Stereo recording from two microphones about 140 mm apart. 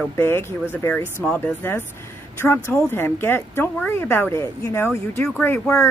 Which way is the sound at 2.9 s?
15° left (ahead or behind).